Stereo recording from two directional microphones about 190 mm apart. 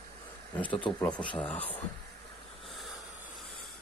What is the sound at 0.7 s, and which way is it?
Speech, 25° left (ahead or behind).